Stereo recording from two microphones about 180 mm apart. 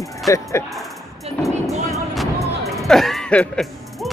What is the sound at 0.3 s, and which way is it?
Speech, 15° left (ahead or behind).